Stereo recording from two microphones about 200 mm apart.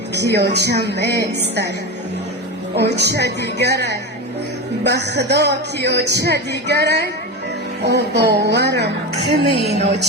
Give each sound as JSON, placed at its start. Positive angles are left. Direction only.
{"t": 0.1, "sound": "a man's voice", "side_deg": -55}
{"t": 2.7, "sound": "a man's voice", "side_deg": -55}
{"t": 9.2, "sound": "a woman's voice", "side_deg": -30}